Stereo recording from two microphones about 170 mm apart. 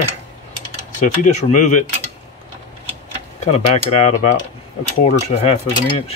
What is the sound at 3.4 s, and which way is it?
Mechanisms, 40° left (ahead or behind).